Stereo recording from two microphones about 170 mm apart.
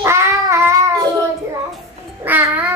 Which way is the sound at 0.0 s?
15° right (ahead or behind).